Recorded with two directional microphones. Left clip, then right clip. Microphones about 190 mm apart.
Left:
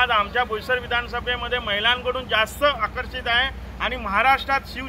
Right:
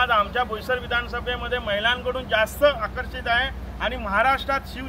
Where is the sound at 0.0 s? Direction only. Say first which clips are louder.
Left 1 dB; 5° right (ahead or behind).